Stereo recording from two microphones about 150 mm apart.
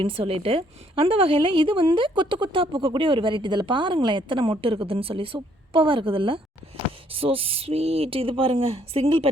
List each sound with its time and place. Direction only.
0.0 s a woman's voice: 35° right (ahead or behind)